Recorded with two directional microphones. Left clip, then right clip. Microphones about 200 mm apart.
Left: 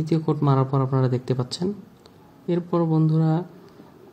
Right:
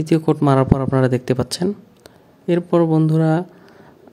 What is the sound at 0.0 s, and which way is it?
Speech, 45° right (ahead or behind).